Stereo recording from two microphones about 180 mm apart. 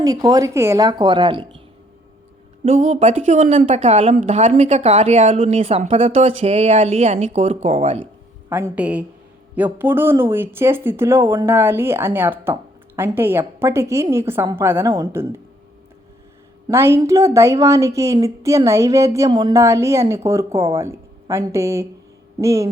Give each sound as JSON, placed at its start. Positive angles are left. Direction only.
{"t": 0.0, "sound": "a woman's voice", "side_deg": -20}
{"t": 2.6, "sound": "a woman's voice", "side_deg": -40}
{"t": 8.4, "sound": "a woman's voice", "side_deg": -10}
{"t": 16.6, "sound": "a woman's voice", "side_deg": -15}